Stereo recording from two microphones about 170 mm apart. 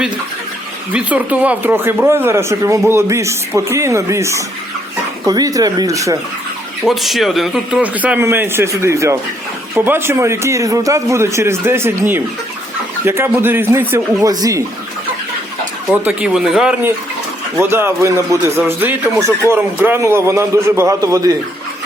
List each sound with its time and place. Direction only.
0.9 s speech: 10° right (ahead or behind)
6.8 s speech: centre (ahead or behind); by 14.6 s 20° right (ahead or behind)
15.9 s speech: 5° right (ahead or behind); by 21.3 s 20° right (ahead or behind)